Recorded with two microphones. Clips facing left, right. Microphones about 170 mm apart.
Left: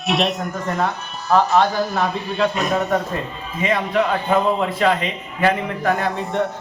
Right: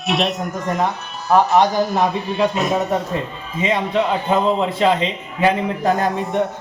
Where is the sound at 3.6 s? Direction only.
25° right (ahead or behind).